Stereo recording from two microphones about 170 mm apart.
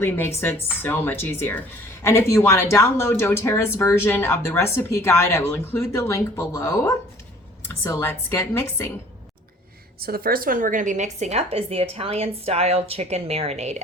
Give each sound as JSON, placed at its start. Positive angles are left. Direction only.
{"t": 0.0, "sound": "speech", "side_deg": 15}
{"t": 10.0, "sound": "a woman's voice", "side_deg": -60}